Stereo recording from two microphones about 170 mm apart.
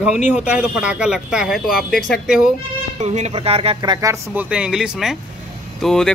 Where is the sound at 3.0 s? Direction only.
40° right (ahead or behind); by 4.5 s 20° right (ahead or behind).